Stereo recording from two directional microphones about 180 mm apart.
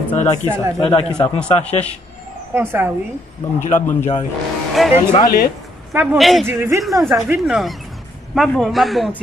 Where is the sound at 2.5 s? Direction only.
10° right (ahead or behind).